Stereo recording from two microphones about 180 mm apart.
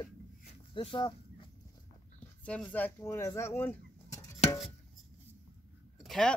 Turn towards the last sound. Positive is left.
turn(degrees=5)  # may be behind; listen again after turning